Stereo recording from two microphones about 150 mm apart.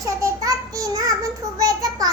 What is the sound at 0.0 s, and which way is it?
Child singing, 25° right (ahead or behind).